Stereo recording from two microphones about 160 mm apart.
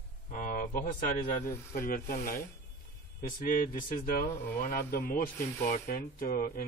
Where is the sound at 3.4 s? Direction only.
60° left (ahead or behind).